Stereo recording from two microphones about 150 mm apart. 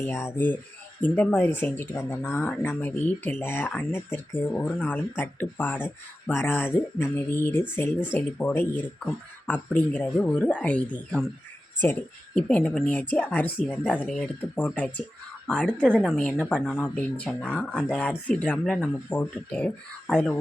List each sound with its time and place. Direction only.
0.0 s a woman's voice: 15° left (ahead or behind)